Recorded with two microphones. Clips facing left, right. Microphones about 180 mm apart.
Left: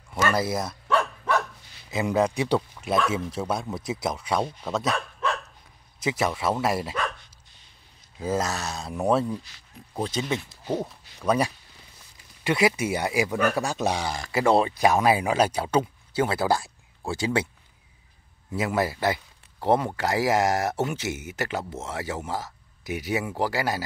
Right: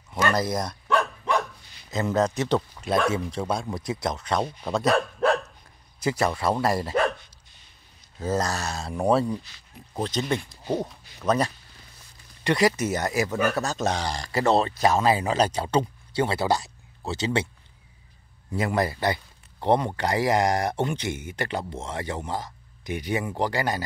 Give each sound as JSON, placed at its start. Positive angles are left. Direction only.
{"t": 0.1, "sound": "speech", "side_deg": 5}
{"t": 0.8, "sound": "dog", "side_deg": -15}
{"t": 1.9, "sound": "a man's voice", "side_deg": 10}
{"t": 4.8, "sound": "dog", "side_deg": -60}
{"t": 5.9, "sound": "a man's voice", "side_deg": 0}
{"t": 8.2, "sound": "a man's voice", "side_deg": 10}
{"t": 18.5, "sound": "a man's voice", "side_deg": 5}